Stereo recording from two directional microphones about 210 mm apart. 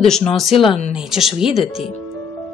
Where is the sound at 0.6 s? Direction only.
30° left (ahead or behind).